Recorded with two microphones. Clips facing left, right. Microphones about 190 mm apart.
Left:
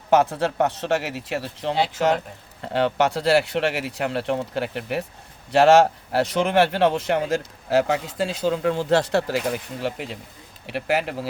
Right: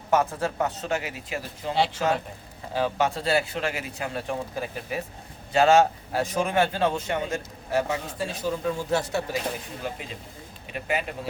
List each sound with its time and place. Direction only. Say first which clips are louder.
0.1 s speech: left 5 dB; 70° left (ahead or behind)